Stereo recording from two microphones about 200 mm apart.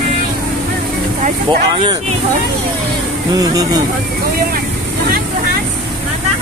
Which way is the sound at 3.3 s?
20° right (ahead or behind).